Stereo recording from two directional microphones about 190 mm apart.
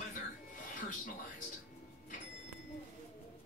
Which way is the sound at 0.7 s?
45° left (ahead or behind).